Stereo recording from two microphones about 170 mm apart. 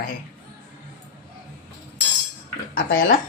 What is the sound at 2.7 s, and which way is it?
Speech, 60° left (ahead or behind).